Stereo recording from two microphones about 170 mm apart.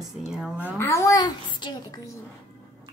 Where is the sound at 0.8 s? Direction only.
15° left (ahead or behind).